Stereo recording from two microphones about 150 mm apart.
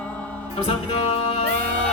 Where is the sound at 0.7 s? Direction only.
45° left (ahead or behind).